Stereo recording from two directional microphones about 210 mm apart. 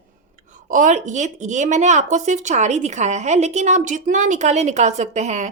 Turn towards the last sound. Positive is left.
turn(degrees=-35)  # may be behind; listen again after turning